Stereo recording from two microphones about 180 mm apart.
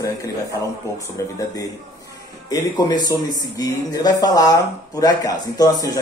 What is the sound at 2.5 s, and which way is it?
Speech, 20° left (ahead or behind).